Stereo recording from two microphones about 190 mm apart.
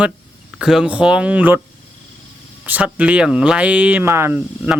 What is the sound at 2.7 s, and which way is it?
Speech, 5° right (ahead or behind).